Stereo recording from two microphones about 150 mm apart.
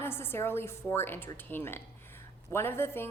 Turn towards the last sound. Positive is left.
turn(degrees=15)  # may be behind; listen again after turning